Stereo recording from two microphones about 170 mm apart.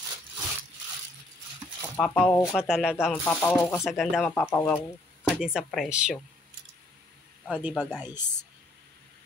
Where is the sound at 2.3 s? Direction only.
15° left (ahead or behind).